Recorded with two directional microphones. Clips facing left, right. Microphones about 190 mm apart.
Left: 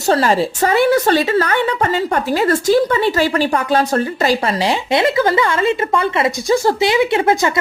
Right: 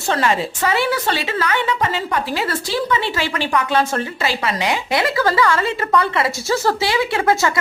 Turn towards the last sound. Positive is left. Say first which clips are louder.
# left 3 dB
turn(degrees=20)  # may be behind; listen again after turning